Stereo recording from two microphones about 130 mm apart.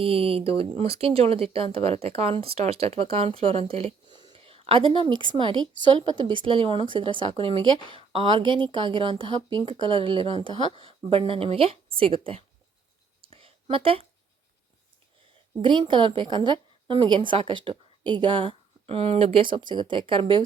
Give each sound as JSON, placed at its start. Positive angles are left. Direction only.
{"t": 0.0, "sound": "speech", "side_deg": -45}
{"t": 4.1, "sound": "speech", "side_deg": -40}
{"t": 13.3, "sound": "a sound", "side_deg": -45}
{"t": 15.6, "sound": "speech", "side_deg": -40}